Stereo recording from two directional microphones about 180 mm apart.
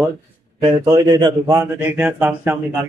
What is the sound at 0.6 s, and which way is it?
Speech, 20° right (ahead or behind).